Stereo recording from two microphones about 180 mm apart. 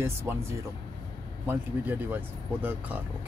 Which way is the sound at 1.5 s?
10° right (ahead or behind).